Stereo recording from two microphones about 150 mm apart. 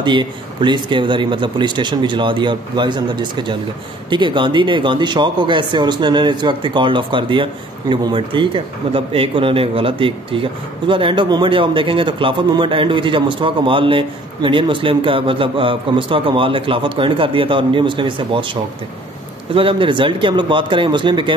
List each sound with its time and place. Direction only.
0.0 s speech: 30° right (ahead or behind)